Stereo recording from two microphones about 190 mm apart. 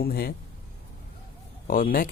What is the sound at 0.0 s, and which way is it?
Speech, 55° left (ahead or behind).